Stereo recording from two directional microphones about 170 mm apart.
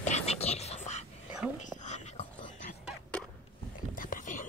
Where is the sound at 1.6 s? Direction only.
45° left (ahead or behind).